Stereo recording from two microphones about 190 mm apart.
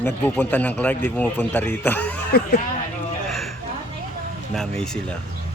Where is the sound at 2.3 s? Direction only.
55° left (ahead or behind).